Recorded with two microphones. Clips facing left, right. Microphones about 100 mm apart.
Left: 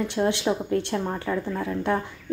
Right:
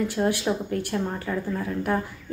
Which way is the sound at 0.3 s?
25° left (ahead or behind).